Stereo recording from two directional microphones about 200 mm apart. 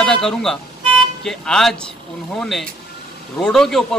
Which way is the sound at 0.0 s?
5° left (ahead or behind).